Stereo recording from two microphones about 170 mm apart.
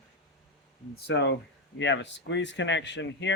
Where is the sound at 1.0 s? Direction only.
90° left.